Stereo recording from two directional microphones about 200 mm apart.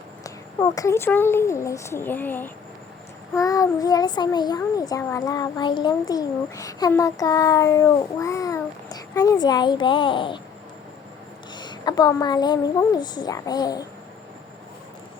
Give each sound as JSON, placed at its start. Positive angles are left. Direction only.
{"t": 0.6, "sound": "a child's voice", "side_deg": 15}
{"t": 11.5, "sound": "a child's voice", "side_deg": 20}